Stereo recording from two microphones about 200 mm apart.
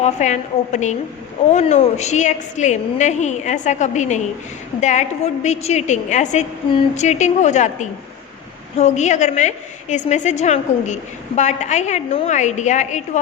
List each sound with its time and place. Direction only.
0.0 s a woman's voice: 35° left (ahead or behind)